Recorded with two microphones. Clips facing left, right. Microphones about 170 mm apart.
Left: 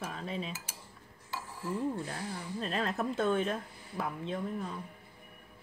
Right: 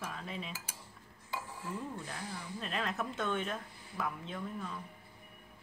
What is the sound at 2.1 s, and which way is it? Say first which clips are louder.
Speech: left 4 dB; 35° left (ahead or behind).